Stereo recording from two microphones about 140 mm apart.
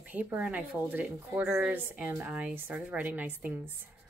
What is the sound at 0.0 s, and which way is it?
Speech, 10° right (ahead or behind).